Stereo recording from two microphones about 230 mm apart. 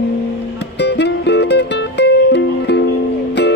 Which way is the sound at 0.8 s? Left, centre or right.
Left.